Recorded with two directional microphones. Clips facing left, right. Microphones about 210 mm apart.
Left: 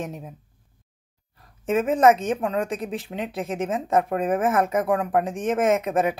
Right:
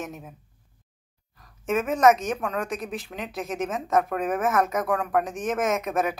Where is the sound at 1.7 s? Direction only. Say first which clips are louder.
Left 2 dB; 30° left (ahead or behind).